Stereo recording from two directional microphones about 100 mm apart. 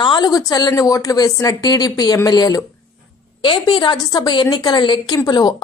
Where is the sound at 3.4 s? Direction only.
55° left (ahead or behind).